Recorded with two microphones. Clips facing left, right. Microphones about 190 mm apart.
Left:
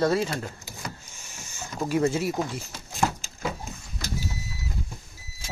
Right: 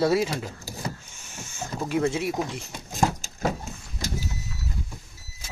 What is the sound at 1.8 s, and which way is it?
Speech, 5° left (ahead or behind).